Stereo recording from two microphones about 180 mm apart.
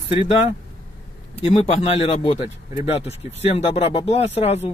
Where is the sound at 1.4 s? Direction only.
30° left (ahead or behind).